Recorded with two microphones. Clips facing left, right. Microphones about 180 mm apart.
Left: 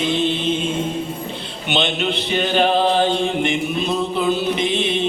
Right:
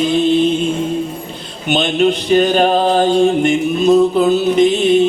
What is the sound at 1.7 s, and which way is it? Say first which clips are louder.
Speech: right 7 dB; 45° right (ahead or behind).